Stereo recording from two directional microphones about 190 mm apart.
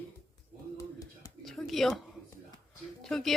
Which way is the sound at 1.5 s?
Centre (ahead or behind).